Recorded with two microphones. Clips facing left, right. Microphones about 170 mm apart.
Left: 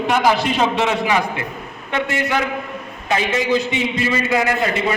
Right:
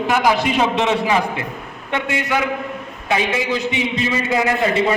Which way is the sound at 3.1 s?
15° right (ahead or behind).